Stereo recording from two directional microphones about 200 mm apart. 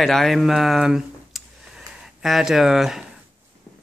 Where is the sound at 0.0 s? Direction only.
Centre (ahead or behind).